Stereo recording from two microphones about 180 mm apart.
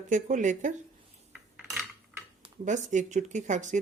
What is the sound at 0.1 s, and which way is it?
Speech, 45° right (ahead or behind).